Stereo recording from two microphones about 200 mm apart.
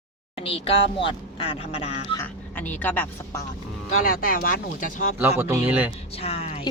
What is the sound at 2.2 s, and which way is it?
Speech, 10° left (ahead or behind).